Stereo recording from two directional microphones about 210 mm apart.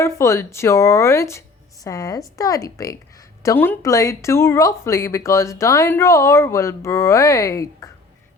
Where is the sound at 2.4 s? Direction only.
15° left (ahead or behind).